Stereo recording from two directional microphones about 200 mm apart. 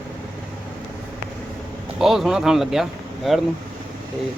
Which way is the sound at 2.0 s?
Centre (ahead or behind).